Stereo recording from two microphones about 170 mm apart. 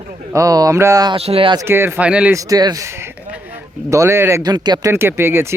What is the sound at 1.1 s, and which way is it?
Speech, 35° right (ahead or behind).